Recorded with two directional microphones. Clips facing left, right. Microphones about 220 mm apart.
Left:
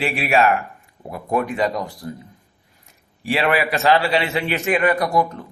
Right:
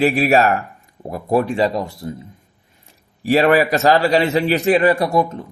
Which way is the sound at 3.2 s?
40° right (ahead or behind).